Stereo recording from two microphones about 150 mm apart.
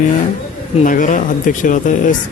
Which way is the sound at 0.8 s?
60° left (ahead or behind).